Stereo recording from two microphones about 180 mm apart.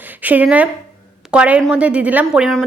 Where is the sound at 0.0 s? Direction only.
10° right (ahead or behind).